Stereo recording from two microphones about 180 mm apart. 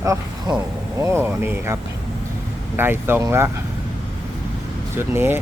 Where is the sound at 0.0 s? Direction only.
20° right (ahead or behind).